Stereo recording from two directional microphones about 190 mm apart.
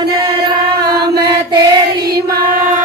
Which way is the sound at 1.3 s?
20° right (ahead or behind).